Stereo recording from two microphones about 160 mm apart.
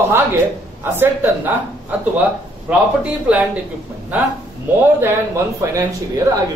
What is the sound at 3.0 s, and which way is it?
A man's voice, 5° right (ahead or behind).